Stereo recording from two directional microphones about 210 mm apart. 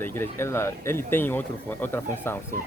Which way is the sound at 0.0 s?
10° left (ahead or behind).